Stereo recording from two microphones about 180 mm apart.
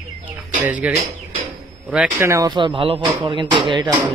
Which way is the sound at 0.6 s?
10° right (ahead or behind).